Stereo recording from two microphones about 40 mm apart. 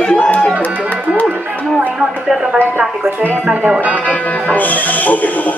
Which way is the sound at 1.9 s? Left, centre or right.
Centre.